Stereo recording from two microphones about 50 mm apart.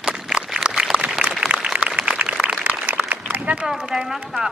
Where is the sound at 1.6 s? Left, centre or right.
Right.